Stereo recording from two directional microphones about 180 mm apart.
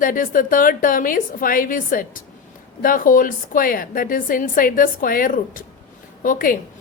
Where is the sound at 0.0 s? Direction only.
50° left (ahead or behind).